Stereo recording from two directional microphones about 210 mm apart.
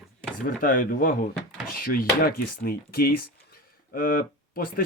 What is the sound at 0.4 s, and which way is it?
Speech, 40° left (ahead or behind).